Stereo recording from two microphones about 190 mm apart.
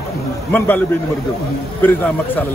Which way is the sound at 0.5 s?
10° left (ahead or behind).